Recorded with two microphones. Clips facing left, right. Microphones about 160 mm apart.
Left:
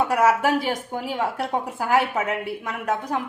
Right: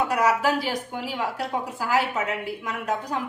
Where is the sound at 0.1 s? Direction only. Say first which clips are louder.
Left 3 dB; 55° left (ahead or behind).